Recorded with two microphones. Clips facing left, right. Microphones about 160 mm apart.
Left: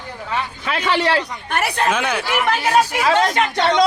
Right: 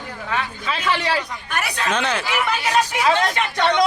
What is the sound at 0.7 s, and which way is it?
Speech, 60° left (ahead or behind).